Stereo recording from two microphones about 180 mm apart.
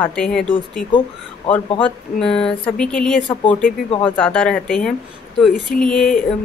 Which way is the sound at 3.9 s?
30° left (ahead or behind).